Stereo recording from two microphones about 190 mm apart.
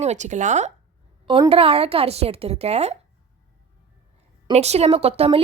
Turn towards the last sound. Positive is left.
turn(degrees=-30)  # may be behind; listen again after turning